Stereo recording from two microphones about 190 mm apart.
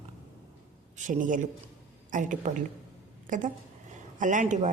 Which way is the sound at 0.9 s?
45° right (ahead or behind).